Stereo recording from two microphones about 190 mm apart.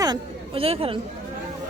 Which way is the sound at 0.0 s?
25° right (ahead or behind).